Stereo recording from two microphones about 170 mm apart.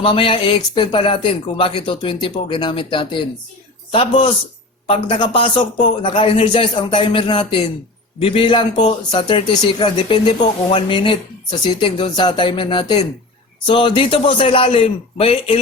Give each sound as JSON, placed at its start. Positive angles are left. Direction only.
{"t": 0.0, "sound": "a man's voice", "side_deg": 30}